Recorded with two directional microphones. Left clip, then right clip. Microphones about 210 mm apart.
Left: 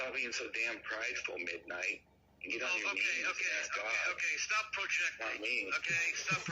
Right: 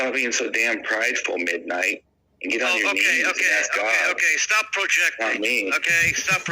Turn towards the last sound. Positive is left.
turn(degrees=-55)  # may be behind; listen again after turning